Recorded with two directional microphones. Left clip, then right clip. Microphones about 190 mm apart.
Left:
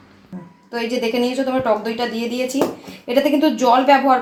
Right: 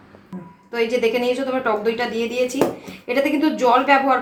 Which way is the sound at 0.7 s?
40° left (ahead or behind).